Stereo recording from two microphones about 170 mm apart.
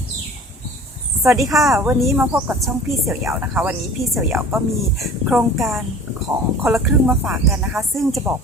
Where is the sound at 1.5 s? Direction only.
Centre (ahead or behind).